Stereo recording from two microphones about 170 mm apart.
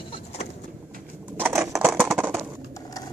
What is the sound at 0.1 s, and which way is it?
Vehicle, 40° left (ahead or behind).